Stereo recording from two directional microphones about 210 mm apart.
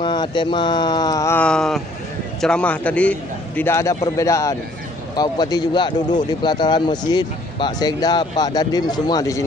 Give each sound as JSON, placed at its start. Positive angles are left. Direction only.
{"t": 0.0, "sound": "a man's voice", "side_deg": 20}